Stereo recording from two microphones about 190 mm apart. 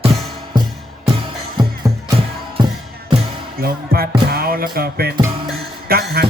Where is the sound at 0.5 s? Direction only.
25° right (ahead or behind).